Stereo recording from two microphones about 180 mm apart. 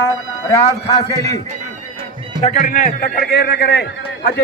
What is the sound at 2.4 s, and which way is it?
A man's voice, 40° left (ahead or behind).